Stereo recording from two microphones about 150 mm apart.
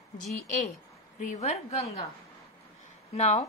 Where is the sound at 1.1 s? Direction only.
45° left (ahead or behind).